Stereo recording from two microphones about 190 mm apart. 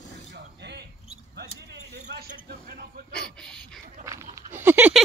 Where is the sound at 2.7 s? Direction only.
50° right (ahead or behind).